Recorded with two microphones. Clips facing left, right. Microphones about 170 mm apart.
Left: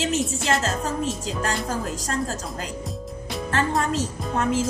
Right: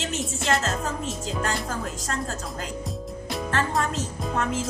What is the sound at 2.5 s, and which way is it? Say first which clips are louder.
Music: left 1 dB; centre (ahead or behind).